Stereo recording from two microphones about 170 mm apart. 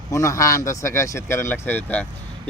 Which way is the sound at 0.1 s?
20° left (ahead or behind).